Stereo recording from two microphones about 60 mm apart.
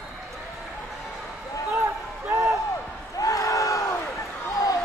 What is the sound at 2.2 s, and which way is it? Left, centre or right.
Music, right.